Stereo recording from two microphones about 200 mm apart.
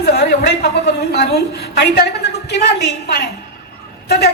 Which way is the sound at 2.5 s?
55° left (ahead or behind).